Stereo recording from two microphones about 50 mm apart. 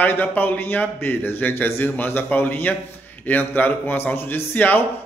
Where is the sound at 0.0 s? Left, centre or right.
Left.